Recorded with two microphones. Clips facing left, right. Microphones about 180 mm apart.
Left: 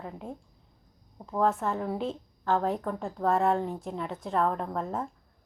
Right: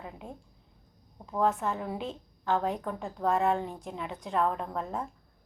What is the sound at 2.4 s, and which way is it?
Speech, 15° right (ahead or behind).